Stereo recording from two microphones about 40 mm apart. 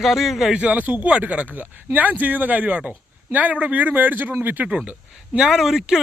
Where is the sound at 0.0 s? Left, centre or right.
Centre.